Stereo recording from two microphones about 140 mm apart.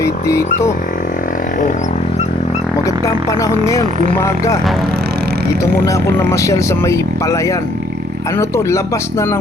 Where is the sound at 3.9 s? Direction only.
65° right (ahead or behind).